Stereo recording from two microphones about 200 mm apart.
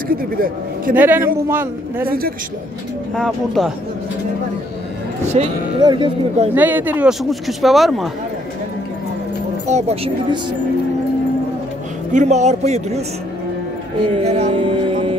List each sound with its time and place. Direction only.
0.1 s a man's voice: 45° right (ahead or behind)
0.9 s a man's voice: 10° right (ahead or behind)
2.0 s a man's voice: 45° right (ahead or behind)
3.2 s speech: centre (ahead or behind)
5.4 s a man's voice: 30° right (ahead or behind)
5.8 s music: 25° right (ahead or behind)
6.5 s speech: 10° right (ahead or behind)
9.7 s a man's voice: 30° right (ahead or behind)
12.1 s a man's voice: 35° right (ahead or behind)
14.2 s music: 25° right (ahead or behind)